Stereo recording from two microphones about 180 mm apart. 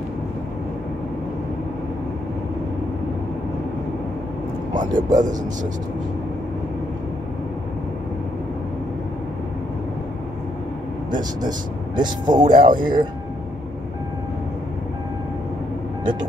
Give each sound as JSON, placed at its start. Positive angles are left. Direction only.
{"t": 4.7, "sound": "speech", "side_deg": -45}
{"t": 11.1, "sound": "speech", "side_deg": -25}